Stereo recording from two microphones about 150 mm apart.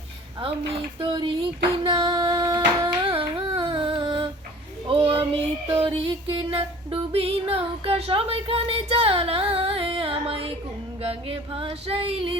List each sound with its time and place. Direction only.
0.9 s female singing: 35° right (ahead or behind)
4.9 s child singing: 35° right (ahead or behind)
5.8 s female singing: 35° right (ahead or behind)